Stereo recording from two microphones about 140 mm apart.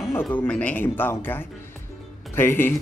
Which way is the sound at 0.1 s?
15° left (ahead or behind).